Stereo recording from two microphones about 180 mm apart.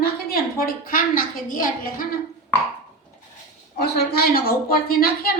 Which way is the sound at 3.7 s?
65° left (ahead or behind).